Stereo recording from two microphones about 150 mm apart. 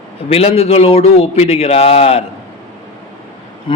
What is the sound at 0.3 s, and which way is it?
A man's voice, 40° left (ahead or behind).